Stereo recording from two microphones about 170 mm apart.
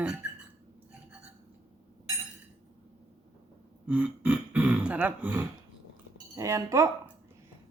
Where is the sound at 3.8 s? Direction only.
10° right (ahead or behind).